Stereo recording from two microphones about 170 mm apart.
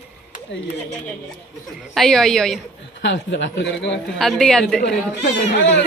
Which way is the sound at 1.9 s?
Centre (ahead or behind).